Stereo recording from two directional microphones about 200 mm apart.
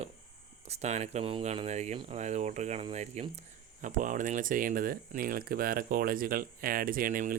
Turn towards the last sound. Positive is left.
turn(degrees=-45)  # may be behind; listen again after turning